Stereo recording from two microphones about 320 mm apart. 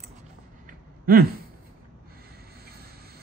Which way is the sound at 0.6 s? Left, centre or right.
Right.